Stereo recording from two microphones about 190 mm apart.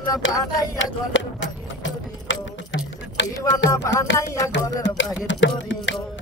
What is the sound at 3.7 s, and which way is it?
Music, 20° left (ahead or behind).